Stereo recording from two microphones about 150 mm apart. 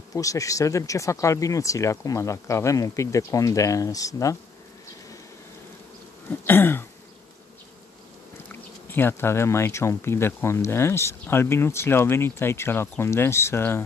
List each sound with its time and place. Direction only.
0.1 s speech: 20° left (ahead or behind)
6.4 s throat clearing: 15° left (ahead or behind)
8.5 s speech: 15° left (ahead or behind)